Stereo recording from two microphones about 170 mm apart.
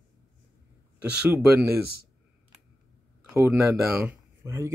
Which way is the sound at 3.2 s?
15° right (ahead or behind).